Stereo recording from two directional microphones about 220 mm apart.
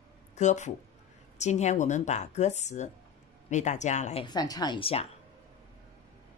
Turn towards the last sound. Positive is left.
turn(degrees=25)  # may be behind; listen again after turning